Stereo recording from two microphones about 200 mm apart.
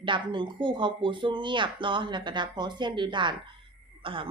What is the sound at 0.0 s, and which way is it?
A woman's voice, 25° right (ahead or behind).